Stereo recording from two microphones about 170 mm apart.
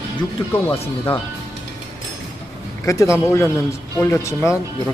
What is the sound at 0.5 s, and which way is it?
Speech, 10° left (ahead or behind).